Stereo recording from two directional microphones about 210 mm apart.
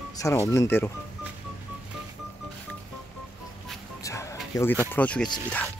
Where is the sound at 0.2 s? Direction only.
15° left (ahead or behind).